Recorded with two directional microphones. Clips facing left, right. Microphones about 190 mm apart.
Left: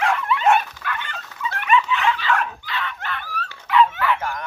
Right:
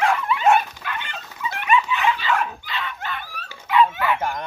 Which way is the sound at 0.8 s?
20° right (ahead or behind).